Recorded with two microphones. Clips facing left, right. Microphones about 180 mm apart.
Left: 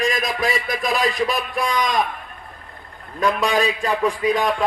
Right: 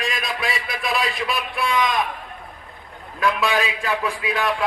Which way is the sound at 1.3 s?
40° left (ahead or behind).